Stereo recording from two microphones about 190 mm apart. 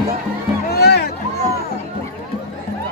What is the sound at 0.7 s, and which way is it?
Music, 60° left (ahead or behind).